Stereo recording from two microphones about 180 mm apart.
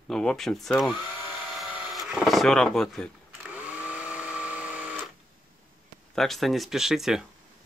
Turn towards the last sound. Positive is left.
turn(degrees=0)  # may be behind; listen again after turning